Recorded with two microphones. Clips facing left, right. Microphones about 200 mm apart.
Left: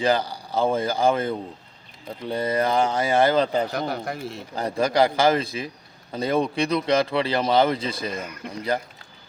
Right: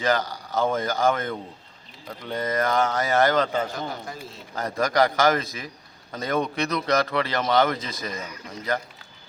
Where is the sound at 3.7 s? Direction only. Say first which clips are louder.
Left 5 dB; 65° left (ahead or behind).